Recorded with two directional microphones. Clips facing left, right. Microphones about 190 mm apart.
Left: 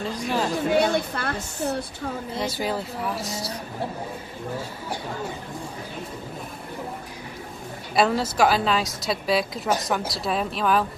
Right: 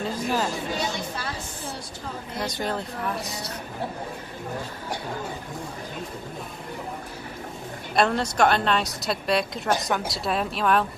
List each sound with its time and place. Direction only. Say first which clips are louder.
0.0 s speech: even; centre (ahead or behind)
0.7 s a woman's voice: left 8 dB; 55° left (ahead or behind)
2.4 s speech: left 1 dB; 5° left (ahead or behind)
7.9 s speech: left 1 dB; 5° left (ahead or behind)